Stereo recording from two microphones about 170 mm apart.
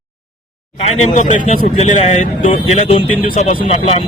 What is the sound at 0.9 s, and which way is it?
Speech, 40° left (ahead or behind).